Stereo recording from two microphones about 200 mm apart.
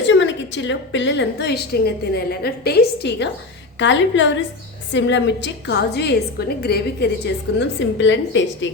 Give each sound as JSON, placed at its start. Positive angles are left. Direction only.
{"t": 0.1, "sound": "a woman's voice", "side_deg": 65}
{"t": 7.6, "sound": "a woman's voice", "side_deg": 65}